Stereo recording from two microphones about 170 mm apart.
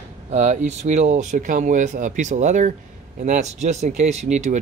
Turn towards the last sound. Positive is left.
turn(degrees=-45)  # may be behind; listen again after turning